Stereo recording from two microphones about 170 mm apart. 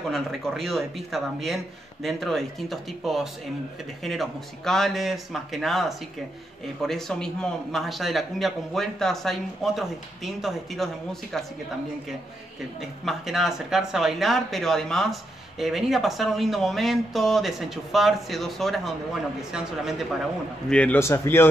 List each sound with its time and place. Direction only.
0.1 s a man's voice: centre (ahead or behind)
12.8 s a man's voice: centre (ahead or behind)
20.7 s a man's voice: 10° left (ahead or behind)